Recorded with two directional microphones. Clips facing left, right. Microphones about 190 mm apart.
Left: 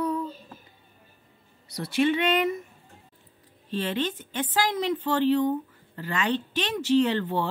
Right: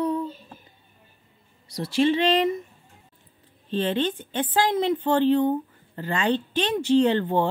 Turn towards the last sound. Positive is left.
turn(degrees=-30)  # may be behind; listen again after turning